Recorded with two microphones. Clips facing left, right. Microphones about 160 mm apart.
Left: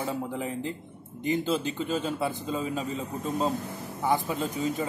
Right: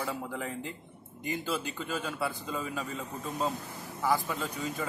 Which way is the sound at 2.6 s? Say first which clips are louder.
Left 4 dB; 20° left (ahead or behind).